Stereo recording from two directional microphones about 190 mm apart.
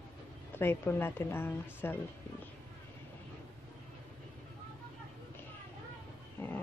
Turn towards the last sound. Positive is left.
turn(degrees=10)  # may be behind; listen again after turning